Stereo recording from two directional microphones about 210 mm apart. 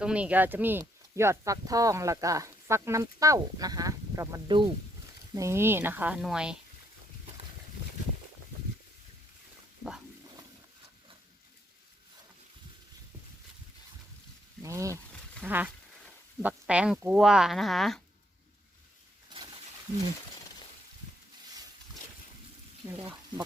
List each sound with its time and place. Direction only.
0.0 s speech: 5° right (ahead or behind)
14.6 s speech: 15° right (ahead or behind); by 18.0 s centre (ahead or behind)
22.8 s speech: 15° right (ahead or behind)